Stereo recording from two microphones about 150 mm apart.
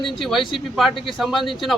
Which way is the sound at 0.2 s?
Centre (ahead or behind).